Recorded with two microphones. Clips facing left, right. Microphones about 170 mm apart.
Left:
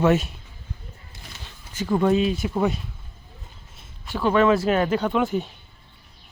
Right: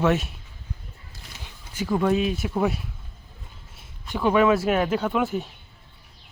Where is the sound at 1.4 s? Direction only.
10° right (ahead or behind).